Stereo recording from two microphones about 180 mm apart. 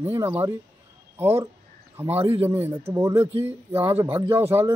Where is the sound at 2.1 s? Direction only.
30° right (ahead or behind).